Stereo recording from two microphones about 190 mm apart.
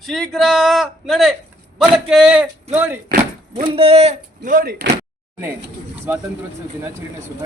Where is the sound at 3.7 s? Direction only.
30° right (ahead or behind).